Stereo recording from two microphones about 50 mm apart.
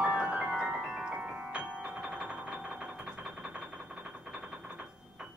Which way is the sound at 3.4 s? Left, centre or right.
Centre.